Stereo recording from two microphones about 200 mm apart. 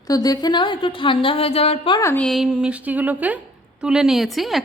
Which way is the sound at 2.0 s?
10° left (ahead or behind).